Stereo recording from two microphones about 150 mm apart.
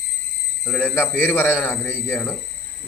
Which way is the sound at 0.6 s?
5° left (ahead or behind).